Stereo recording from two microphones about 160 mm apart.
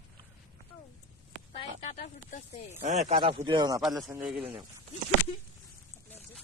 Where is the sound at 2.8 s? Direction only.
45° right (ahead or behind).